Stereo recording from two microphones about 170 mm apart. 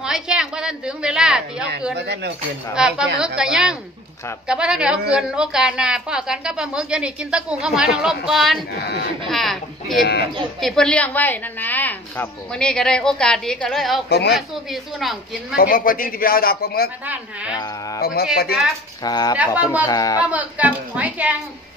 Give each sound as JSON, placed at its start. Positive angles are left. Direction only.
{"t": 0.0, "sound": "a woman's voice", "side_deg": -5}
{"t": 2.0, "sound": "speech", "side_deg": -90}
{"t": 2.7, "sound": "a woman's voice", "side_deg": -5}
{"t": 14.0, "sound": "a woman's voice", "side_deg": 80}
{"t": 14.3, "sound": "a woman's voice", "side_deg": 0}
{"t": 15.5, "sound": "a man's voice", "side_deg": 55}
{"t": 17.0, "sound": "a woman's voice", "side_deg": -10}
{"t": 17.6, "sound": "speech", "side_deg": 20}
{"t": 18.0, "sound": "a man's voice", "side_deg": 65}
{"t": 19.0, "sound": "speech", "side_deg": 25}
{"t": 19.3, "sound": "a woman's voice", "side_deg": -10}
{"t": 19.9, "sound": "speech", "side_deg": 20}
{"t": 20.2, "sound": "a woman's voice", "side_deg": -10}